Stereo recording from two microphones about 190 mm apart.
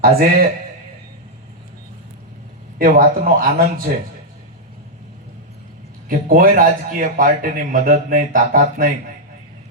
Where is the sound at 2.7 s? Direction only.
45° right (ahead or behind).